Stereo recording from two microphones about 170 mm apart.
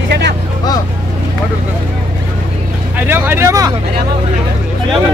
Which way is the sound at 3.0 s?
10° right (ahead or behind).